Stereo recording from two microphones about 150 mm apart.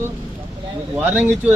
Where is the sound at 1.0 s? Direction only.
10° right (ahead or behind).